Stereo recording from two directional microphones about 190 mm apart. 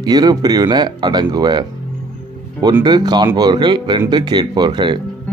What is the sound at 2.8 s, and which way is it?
Speech, 20° right (ahead or behind).